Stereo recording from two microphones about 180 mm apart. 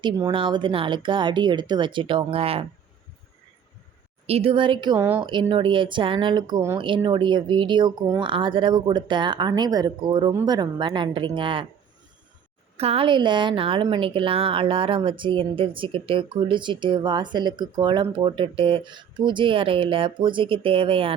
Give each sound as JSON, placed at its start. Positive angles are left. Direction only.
{"t": 0.0, "sound": "speech", "side_deg": -25}
{"t": 4.3, "sound": "speech", "side_deg": -35}
{"t": 4.9, "sound": "speech", "side_deg": -10}
{"t": 5.2, "sound": "speech", "side_deg": -25}
{"t": 12.7, "sound": "speech", "side_deg": -35}